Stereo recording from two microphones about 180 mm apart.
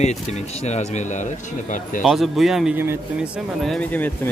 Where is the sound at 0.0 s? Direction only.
40° left (ahead or behind).